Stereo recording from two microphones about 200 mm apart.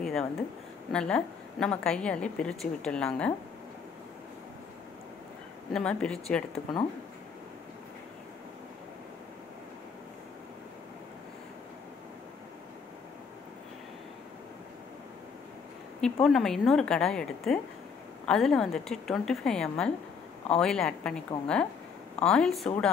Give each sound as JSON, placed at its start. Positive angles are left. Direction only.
{"t": 0.0, "sound": "a woman's voice", "side_deg": 0}
{"t": 5.7, "sound": "a woman's voice", "side_deg": 5}
{"t": 6.5, "sound": "speech", "side_deg": 25}
{"t": 16.0, "sound": "a woman's voice", "side_deg": 0}